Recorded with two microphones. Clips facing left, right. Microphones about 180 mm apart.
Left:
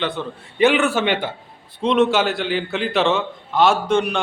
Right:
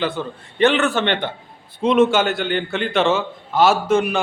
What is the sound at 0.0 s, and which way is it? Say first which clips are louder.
Speech: right 2 dB; centre (ahead or behind).